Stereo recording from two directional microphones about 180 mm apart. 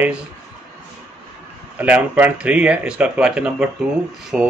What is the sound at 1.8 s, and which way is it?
Speech, 10° right (ahead or behind).